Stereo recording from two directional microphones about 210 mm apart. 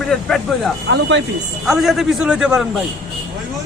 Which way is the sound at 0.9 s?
60° right (ahead or behind).